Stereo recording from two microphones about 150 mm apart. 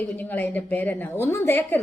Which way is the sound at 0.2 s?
10° left (ahead or behind).